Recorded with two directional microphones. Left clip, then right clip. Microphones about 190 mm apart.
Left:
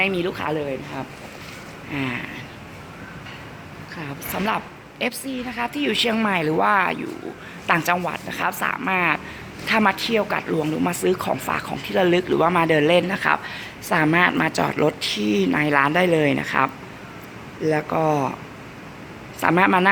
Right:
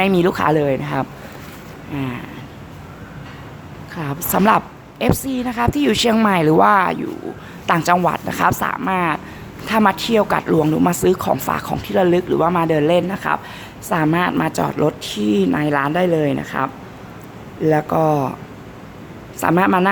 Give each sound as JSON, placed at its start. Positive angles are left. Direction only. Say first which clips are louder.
{"t": 0.0, "sound": "a woman's voice", "louder": "right 7 dB", "side_deg": -25}
{"t": 1.9, "sound": "speech", "louder": "even", "side_deg": -5}
{"t": 4.2, "sound": "a woman's voice", "louder": "right 10 dB", "side_deg": -30}
{"t": 17.6, "sound": "speech", "louder": "right 5 dB", "side_deg": -15}
{"t": 19.4, "sound": "speech", "louder": "right 2 dB", "side_deg": -5}